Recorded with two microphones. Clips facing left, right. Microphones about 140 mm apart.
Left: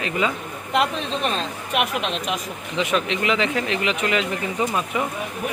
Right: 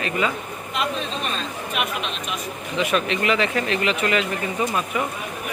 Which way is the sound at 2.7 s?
20° left (ahead or behind).